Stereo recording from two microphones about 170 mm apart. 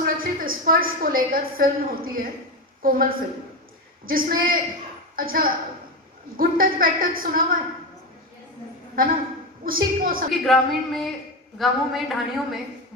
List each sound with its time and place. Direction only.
0.0 s a woman's voice: 55° right (ahead or behind)
9.6 s a woman's voice: 60° right (ahead or behind)
10.4 s a woman's voice: centre (ahead or behind)